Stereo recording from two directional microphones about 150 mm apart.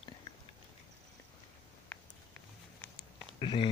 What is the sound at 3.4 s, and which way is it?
Speech, 30° left (ahead or behind).